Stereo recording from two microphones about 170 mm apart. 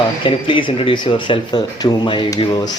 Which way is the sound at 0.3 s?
30° left (ahead or behind).